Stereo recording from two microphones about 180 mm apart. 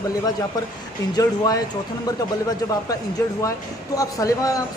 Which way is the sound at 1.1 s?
20° left (ahead or behind).